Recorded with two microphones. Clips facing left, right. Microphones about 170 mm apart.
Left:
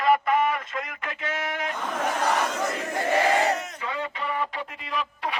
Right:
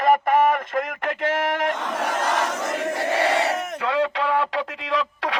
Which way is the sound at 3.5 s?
75° right (ahead or behind).